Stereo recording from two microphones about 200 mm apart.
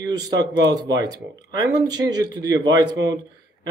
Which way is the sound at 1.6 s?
20° right (ahead or behind).